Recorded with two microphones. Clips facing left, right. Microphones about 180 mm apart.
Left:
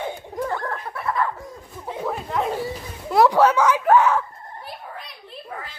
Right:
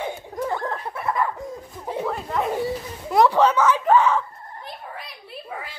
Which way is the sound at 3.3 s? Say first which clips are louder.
Left 1 dB; 10° left (ahead or behind).